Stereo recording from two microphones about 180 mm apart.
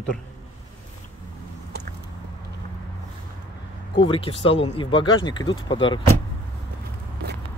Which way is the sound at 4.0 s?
30° left (ahead or behind).